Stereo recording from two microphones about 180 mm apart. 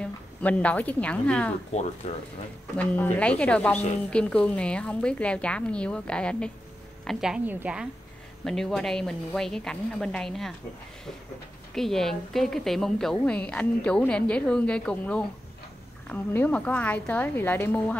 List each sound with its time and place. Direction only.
0.0 s a woman's voice: 10° left (ahead or behind)
1.7 s speech: 40° left (ahead or behind)
2.8 s a woman's voice: 10° left (ahead or behind)
11.7 s a woman's voice: centre (ahead or behind)